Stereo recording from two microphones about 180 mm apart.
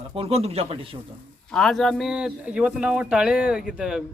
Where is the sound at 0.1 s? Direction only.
30° right (ahead or behind).